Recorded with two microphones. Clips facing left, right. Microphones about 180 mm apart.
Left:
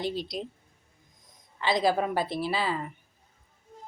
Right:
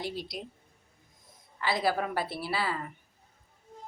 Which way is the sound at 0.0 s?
25° left (ahead or behind).